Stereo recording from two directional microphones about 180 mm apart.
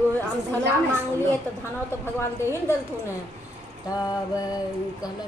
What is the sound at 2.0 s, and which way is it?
Speech, 15° left (ahead or behind).